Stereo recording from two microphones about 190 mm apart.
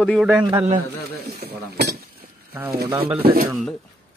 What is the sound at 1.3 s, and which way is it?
Cutlery, 60° right (ahead or behind).